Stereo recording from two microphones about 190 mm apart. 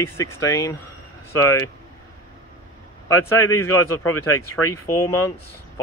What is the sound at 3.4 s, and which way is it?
Speech, 15° left (ahead or behind).